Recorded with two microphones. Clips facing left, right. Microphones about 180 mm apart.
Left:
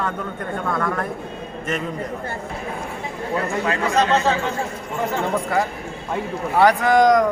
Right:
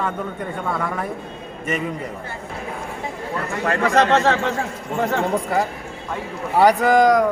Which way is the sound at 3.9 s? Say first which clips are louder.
Right 2 dB; 75° right (ahead or behind).